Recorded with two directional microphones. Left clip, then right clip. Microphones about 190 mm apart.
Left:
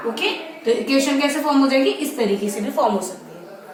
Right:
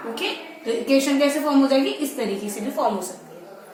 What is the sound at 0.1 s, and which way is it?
A woman's voice, 15° left (ahead or behind).